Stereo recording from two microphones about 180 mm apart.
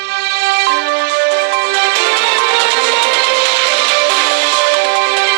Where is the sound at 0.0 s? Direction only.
65° right (ahead or behind).